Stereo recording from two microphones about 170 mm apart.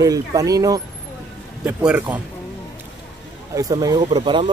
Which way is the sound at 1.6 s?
5° right (ahead or behind).